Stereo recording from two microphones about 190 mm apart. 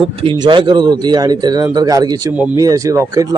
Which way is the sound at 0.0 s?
30° right (ahead or behind).